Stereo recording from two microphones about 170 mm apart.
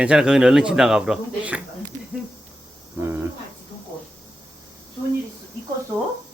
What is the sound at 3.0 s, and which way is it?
Speech, 15° right (ahead or behind).